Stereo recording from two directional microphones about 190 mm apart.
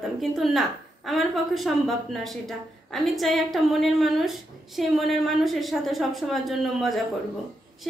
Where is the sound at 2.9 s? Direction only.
Centre (ahead or behind).